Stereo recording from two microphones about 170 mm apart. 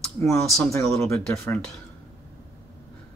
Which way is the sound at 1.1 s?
15° left (ahead or behind).